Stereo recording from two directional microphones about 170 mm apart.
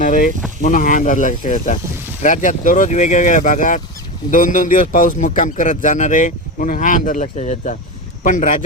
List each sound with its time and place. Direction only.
0.0 s vehicle: 50° left (ahead or behind)
0.6 s a man's voice: 50° left (ahead or behind)